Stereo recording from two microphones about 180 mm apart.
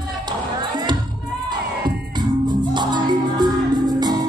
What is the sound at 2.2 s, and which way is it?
Music, 25° right (ahead or behind).